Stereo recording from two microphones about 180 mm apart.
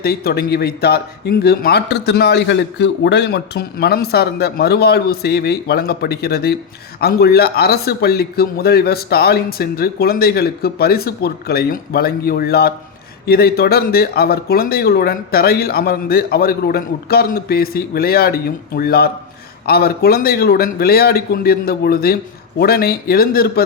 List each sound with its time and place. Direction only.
0.0 s speech: 60° left (ahead or behind)